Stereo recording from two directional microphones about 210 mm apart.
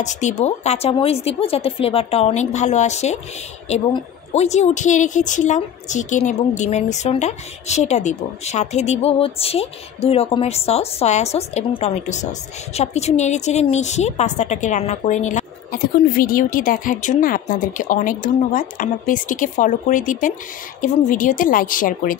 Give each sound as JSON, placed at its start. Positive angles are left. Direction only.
{"t": 0.0, "sound": "a woman's voice", "side_deg": 35}